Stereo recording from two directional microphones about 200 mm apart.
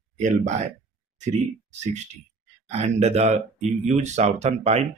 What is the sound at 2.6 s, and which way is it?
Speech, 30° right (ahead or behind).